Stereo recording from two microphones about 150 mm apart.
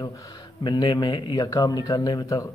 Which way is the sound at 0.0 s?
25° left (ahead or behind).